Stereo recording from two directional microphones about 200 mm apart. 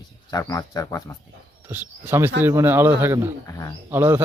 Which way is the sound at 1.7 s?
10° right (ahead or behind).